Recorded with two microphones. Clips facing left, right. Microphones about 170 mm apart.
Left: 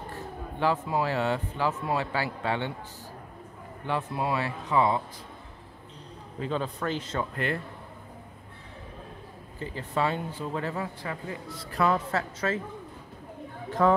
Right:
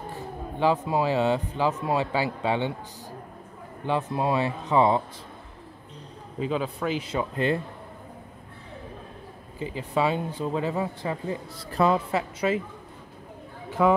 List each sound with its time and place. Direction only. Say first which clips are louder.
0.6 s speech: right 3 dB; 15° right (ahead or behind)
3.8 s speech: right 4 dB; 20° right (ahead or behind)
6.4 s speech: right 3 dB; 10° right (ahead or behind)
9.6 s speech: right 3 dB; 15° right (ahead or behind)
12.1 s speech: right 4 dB; 15° right (ahead or behind)
13.7 s a sound: right 2 dB; 10° right (ahead or behind)